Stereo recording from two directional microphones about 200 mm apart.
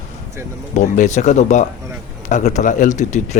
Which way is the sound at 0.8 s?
35° left (ahead or behind).